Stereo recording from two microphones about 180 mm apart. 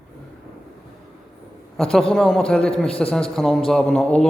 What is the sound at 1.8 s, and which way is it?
A man's voice, centre (ahead or behind).